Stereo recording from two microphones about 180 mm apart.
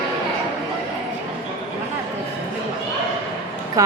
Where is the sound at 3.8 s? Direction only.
20° right (ahead or behind).